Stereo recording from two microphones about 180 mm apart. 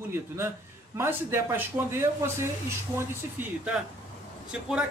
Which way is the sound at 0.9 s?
15° right (ahead or behind).